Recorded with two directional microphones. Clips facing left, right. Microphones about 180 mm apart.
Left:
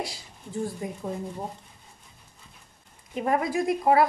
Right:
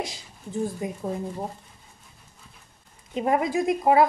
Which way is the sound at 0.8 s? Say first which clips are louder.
Right 3 dB; 20° right (ahead or behind).